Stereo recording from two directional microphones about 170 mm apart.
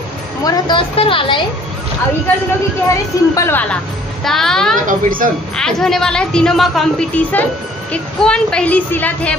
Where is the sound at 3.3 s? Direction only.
15° left (ahead or behind).